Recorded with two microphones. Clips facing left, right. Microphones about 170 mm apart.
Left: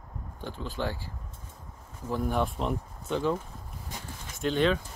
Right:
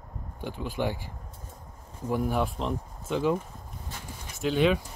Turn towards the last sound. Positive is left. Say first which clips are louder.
# right 2 dB
turn(degrees=-5)  # may be behind; listen again after turning